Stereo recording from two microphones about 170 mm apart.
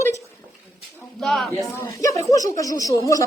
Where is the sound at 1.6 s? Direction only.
20° left (ahead or behind).